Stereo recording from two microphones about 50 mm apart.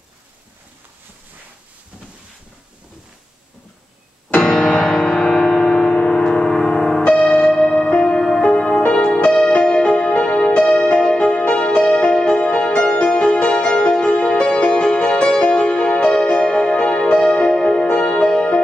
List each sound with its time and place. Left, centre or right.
4.4 s music: centre
5.6 s a sound: left
5.9 s gong: left
7.1 s music: centre